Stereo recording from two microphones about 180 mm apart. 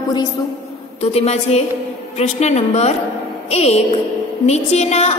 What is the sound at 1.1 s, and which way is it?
A woman's voice, 35° left (ahead or behind).